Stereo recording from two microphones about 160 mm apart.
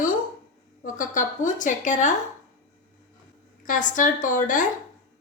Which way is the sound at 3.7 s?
55° left (ahead or behind).